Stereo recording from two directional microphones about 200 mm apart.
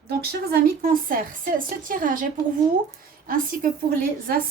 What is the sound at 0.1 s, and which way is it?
A woman's voice, 50° right (ahead or behind).